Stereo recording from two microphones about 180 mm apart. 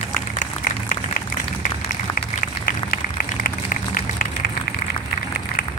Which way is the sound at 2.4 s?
55° left (ahead or behind).